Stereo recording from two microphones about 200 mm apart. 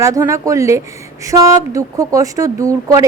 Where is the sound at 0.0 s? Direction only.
15° right (ahead or behind).